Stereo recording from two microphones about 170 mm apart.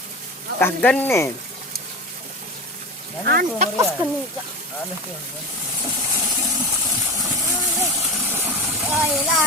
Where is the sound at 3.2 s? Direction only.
65° right (ahead or behind).